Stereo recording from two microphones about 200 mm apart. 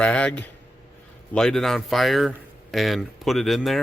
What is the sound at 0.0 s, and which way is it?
A man's voice, 5° left (ahead or behind).